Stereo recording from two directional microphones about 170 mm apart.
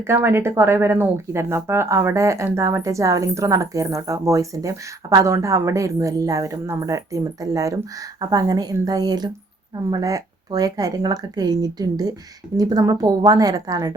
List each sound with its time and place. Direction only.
0.0 s speech: 15° right (ahead or behind)